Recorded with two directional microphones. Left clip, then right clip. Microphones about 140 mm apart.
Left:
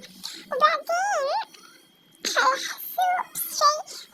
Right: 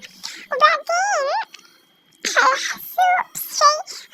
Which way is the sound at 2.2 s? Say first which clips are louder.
Right 6 dB; 25° right (ahead or behind).